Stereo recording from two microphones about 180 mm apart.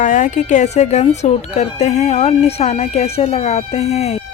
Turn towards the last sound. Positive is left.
turn(degrees=35)  # may be behind; listen again after turning